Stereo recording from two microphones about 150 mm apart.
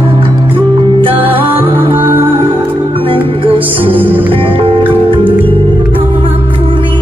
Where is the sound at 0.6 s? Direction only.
35° right (ahead or behind).